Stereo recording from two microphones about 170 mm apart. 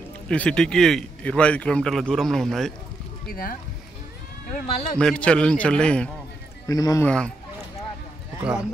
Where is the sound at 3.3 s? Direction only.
60° left (ahead or behind).